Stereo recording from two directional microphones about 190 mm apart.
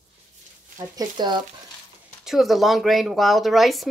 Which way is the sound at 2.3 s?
Centre (ahead or behind).